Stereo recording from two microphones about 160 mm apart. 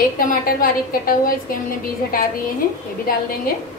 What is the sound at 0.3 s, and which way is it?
A woman's voice, 65° left (ahead or behind).